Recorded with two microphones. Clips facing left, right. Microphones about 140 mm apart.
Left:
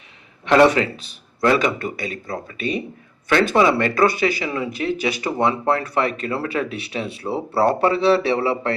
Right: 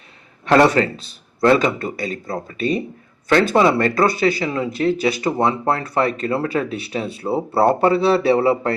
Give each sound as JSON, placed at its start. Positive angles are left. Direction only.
{"t": 0.4, "sound": "speech", "side_deg": -35}